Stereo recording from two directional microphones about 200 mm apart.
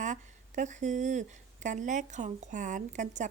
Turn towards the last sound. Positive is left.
turn(degrees=-35)  # may be behind; listen again after turning